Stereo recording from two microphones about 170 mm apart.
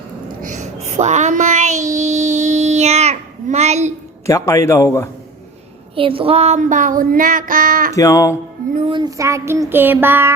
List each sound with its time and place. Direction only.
0.4 s child singing: 45° right (ahead or behind)
4.3 s a man's voice: 20° left (ahead or behind)
6.0 s a sound: 30° right (ahead or behind); by 7.9 s 55° right (ahead or behind)
7.9 s speech: 20° left (ahead or behind)
8.9 s child singing: 25° right (ahead or behind)